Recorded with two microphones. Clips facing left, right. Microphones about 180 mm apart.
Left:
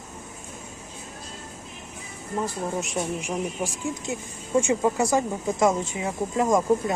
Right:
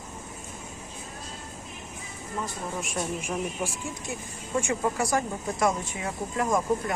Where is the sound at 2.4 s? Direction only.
20° left (ahead or behind).